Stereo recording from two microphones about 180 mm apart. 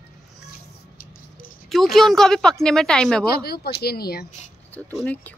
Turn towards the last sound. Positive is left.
turn(degrees=10)  # may be behind; listen again after turning